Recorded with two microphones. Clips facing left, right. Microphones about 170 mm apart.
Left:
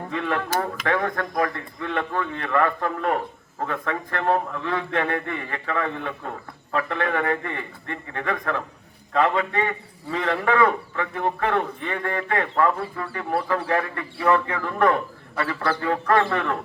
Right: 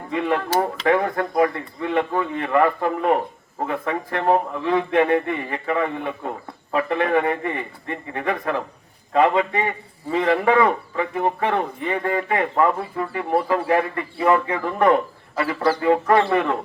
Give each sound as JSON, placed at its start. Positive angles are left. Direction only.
{"t": 0.1, "sound": "speech", "side_deg": -20}
{"t": 0.5, "sound": "speech", "side_deg": -30}
{"t": 1.4, "sound": "a man's voice", "side_deg": -10}